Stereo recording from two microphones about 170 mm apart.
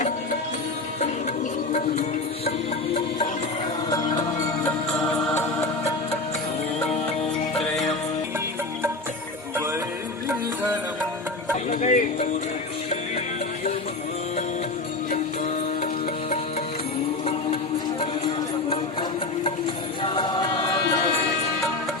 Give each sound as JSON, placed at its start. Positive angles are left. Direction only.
{"t": 1.7, "sound": "music", "side_deg": 40}
{"t": 3.8, "sound": "music", "side_deg": 20}
{"t": 4.9, "sound": "music", "side_deg": 5}
{"t": 5.3, "sound": "music", "side_deg": 15}
{"t": 11.7, "sound": "music", "side_deg": 50}
{"t": 20.0, "sound": "chant", "side_deg": 30}